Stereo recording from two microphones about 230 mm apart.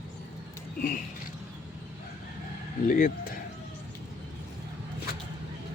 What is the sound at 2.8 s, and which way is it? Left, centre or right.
Speech, left.